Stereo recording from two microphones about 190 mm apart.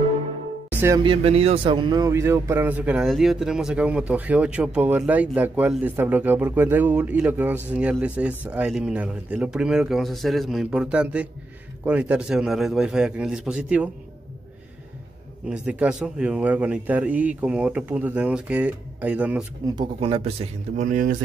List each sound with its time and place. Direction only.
0.7 s speech: 15° right (ahead or behind)
1.0 s a man's voice: 30° right (ahead or behind); by 13.8 s 5° right (ahead or behind)
15.4 s a man's voice: 5° right (ahead or behind)
19.6 s speech: 25° right (ahead or behind); by 21.2 s 45° right (ahead or behind)